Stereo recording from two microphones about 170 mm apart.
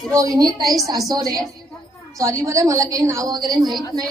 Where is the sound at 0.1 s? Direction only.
20° right (ahead or behind).